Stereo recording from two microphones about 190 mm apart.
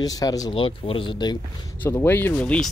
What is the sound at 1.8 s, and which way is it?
Speech, 10° left (ahead or behind).